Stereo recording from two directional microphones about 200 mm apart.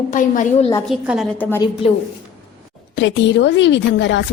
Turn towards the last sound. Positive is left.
turn(degrees=65)  # may be behind; listen again after turning